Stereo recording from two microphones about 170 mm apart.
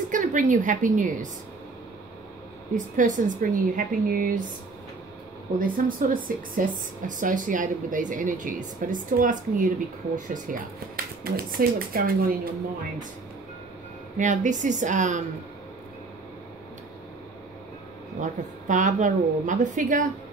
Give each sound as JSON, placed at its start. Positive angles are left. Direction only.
{"t": 0.1, "sound": "a woman's voice", "side_deg": -50}
{"t": 2.7, "sound": "speech", "side_deg": -50}
{"t": 5.6, "sound": "speech", "side_deg": -55}
{"t": 14.1, "sound": "speech", "side_deg": -50}
{"t": 18.2, "sound": "speech", "side_deg": -45}